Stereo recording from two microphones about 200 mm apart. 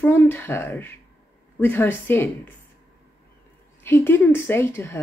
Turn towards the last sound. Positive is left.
turn(degrees=10)  # may be behind; listen again after turning